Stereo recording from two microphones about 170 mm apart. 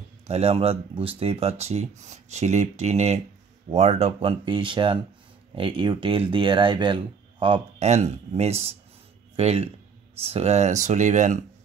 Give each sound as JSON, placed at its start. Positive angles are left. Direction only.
{"t": 0.3, "sound": "speech", "side_deg": -35}